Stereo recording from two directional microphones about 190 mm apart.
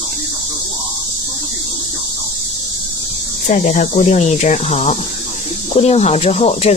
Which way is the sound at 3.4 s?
40° left (ahead or behind).